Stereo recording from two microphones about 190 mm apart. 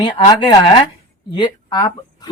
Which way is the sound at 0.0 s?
25° left (ahead or behind).